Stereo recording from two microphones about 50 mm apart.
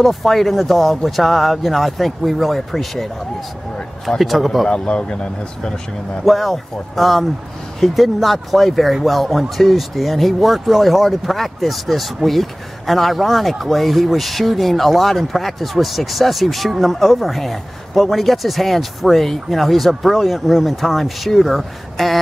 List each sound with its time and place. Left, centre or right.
0.0 s speech: centre
4.2 s speech: centre
4.6 s speech: centre
6.2 s speech: centre